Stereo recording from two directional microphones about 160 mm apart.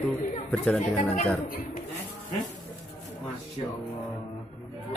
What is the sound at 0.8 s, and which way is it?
Speech, 50° left (ahead or behind).